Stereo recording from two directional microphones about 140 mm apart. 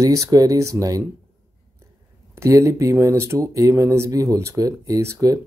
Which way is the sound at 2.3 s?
20° right (ahead or behind).